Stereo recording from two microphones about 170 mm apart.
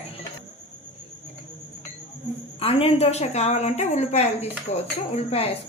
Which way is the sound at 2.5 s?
35° left (ahead or behind).